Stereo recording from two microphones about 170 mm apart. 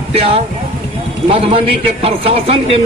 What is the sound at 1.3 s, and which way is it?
A man's voice, 35° right (ahead or behind).